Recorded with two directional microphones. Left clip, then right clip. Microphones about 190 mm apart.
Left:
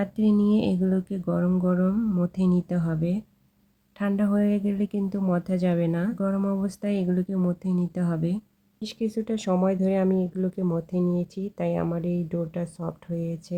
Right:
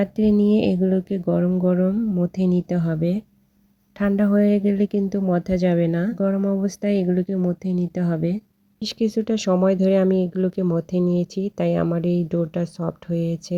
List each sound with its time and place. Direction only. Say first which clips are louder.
0.0 s speech: right 5 dB; 25° right (ahead or behind)